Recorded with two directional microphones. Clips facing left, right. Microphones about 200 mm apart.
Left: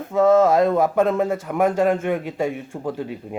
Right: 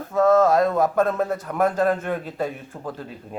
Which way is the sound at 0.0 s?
15° left (ahead or behind).